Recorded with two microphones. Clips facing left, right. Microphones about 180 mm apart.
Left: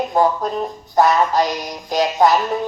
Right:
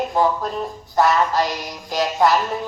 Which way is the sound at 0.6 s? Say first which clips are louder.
Left 3 dB; 40° left (ahead or behind).